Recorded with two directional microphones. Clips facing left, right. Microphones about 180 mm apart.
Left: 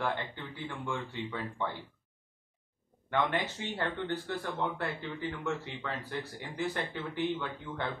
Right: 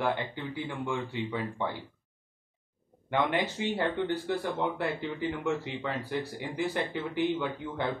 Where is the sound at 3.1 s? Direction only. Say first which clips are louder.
Right 3 dB; 15° right (ahead or behind).